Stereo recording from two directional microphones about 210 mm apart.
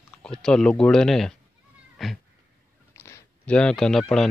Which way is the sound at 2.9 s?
15° left (ahead or behind).